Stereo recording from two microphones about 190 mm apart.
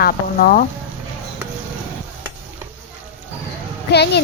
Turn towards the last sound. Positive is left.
turn(degrees=60)  # may be behind; listen again after turning